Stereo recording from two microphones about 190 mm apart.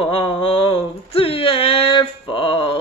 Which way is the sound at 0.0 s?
30° left (ahead or behind).